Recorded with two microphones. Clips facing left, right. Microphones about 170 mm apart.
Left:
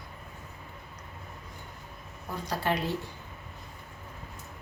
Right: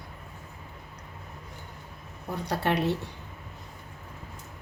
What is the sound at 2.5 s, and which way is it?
Speech, 65° right (ahead or behind).